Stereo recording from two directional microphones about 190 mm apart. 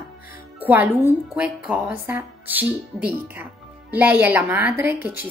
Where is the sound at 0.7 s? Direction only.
10° right (ahead or behind).